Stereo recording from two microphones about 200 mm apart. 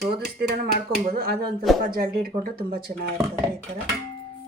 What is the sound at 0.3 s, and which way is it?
Speech, 45° right (ahead or behind).